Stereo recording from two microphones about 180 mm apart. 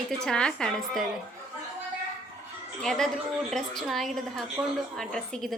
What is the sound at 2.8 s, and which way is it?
A woman's voice, 5° left (ahead or behind).